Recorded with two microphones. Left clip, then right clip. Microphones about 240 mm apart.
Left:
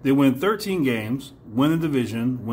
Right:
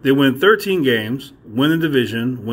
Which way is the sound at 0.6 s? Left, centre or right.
Centre.